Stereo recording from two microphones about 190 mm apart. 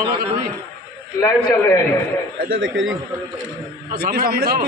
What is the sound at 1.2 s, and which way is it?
Speech, 15° left (ahead or behind).